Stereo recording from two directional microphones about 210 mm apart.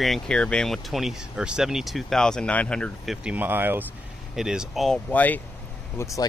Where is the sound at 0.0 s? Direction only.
Centre (ahead or behind).